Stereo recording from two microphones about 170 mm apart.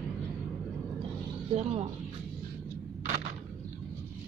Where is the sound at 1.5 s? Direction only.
40° right (ahead or behind).